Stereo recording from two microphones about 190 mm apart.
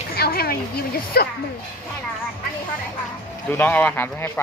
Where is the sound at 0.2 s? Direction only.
50° left (ahead or behind).